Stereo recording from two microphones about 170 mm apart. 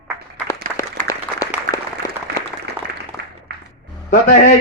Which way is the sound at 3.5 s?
70° right (ahead or behind).